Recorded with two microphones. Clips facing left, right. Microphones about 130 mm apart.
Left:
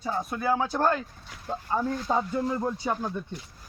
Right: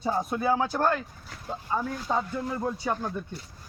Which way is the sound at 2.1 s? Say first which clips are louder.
Left 1 dB; 10° left (ahead or behind).